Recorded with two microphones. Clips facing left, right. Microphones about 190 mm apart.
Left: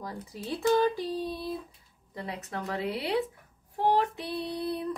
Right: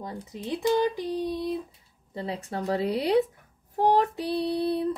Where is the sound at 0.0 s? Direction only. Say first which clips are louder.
Right 3 dB; 20° right (ahead or behind).